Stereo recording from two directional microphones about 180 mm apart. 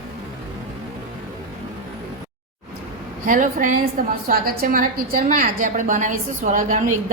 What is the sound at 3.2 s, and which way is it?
A woman's voice, 45° right (ahead or behind).